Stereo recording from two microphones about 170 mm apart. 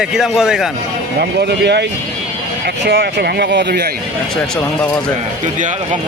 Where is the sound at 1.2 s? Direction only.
75° right (ahead or behind).